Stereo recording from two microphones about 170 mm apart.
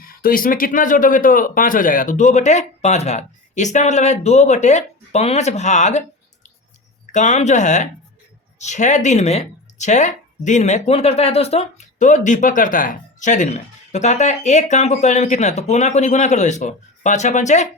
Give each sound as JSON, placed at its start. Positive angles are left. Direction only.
{"t": 0.0, "sound": "speech", "side_deg": 55}
{"t": 7.1, "sound": "speech", "side_deg": 45}